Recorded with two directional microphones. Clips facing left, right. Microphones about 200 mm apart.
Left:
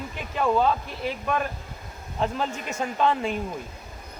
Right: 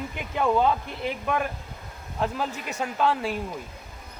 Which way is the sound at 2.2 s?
5° right (ahead or behind).